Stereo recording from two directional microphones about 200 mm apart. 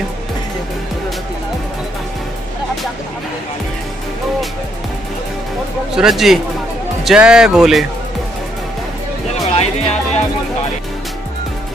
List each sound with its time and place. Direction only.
5.9 s speech: centre (ahead or behind)
9.5 s music: 30° left (ahead or behind)